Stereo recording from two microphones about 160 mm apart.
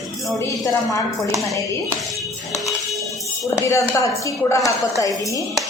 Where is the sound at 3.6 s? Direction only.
20° left (ahead or behind).